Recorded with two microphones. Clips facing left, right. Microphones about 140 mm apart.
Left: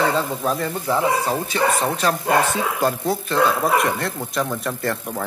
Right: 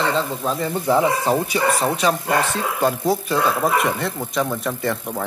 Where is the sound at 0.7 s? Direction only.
15° right (ahead or behind).